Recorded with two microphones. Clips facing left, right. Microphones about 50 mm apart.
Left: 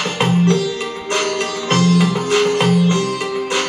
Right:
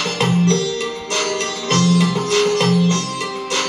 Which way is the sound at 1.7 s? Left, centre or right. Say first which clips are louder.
Left 1 dB; centre.